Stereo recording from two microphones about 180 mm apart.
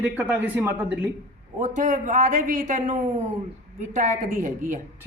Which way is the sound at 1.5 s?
45° right (ahead or behind).